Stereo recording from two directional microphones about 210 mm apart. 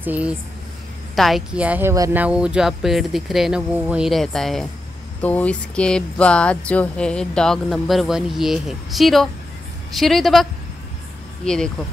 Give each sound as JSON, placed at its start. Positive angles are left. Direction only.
{"t": 0.0, "sound": "speech", "side_deg": -5}